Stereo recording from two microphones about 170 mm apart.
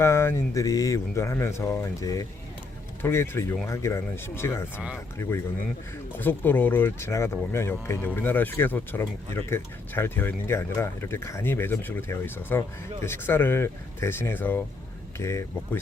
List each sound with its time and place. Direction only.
0.0 s speech: 15° left (ahead or behind)
6.1 s speech: 10° left (ahead or behind)